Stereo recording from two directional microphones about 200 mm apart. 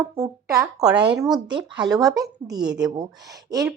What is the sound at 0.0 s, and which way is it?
Speech, 15° right (ahead or behind).